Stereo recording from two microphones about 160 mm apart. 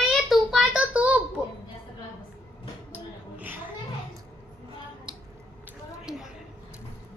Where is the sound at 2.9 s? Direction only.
10° right (ahead or behind).